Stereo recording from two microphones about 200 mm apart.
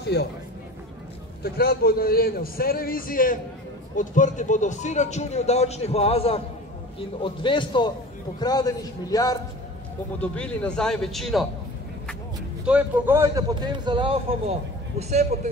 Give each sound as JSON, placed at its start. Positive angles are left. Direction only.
{"t": 0.2, "sound": "a man's voice", "side_deg": 55}
{"t": 1.4, "sound": "a man's voice", "side_deg": 50}
{"t": 10.2, "sound": "a man's voice", "side_deg": 5}
{"t": 12.6, "sound": "a man's voice", "side_deg": -10}